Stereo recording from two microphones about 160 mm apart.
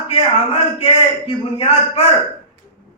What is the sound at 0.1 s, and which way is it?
A man's voice, 40° left (ahead or behind).